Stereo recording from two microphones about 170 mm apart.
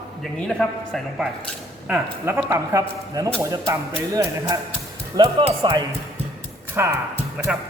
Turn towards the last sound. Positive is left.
turn(degrees=-5)  # may be behind; listen again after turning